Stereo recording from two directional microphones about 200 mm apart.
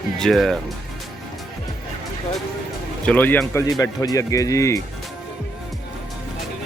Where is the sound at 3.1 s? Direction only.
10° left (ahead or behind).